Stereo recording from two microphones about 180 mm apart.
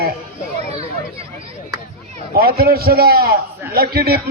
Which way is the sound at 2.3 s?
55° right (ahead or behind).